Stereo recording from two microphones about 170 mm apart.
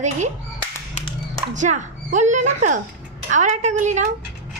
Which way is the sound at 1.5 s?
45° right (ahead or behind).